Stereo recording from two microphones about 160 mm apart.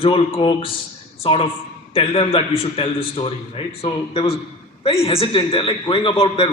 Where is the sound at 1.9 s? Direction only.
40° left (ahead or behind).